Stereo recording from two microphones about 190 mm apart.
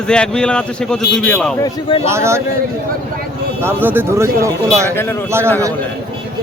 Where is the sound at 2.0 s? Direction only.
15° right (ahead or behind).